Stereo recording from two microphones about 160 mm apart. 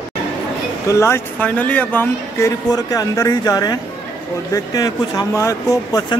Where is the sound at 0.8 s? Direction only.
15° left (ahead or behind).